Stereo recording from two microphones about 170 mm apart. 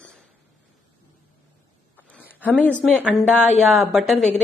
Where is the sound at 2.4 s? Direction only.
10° left (ahead or behind).